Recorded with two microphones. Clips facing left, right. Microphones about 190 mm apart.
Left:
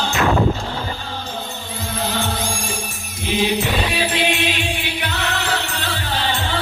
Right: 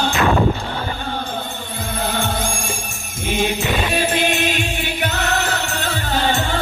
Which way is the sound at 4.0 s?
45° right (ahead or behind).